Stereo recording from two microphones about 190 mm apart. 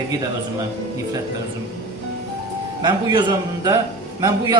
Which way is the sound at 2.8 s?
25° right (ahead or behind).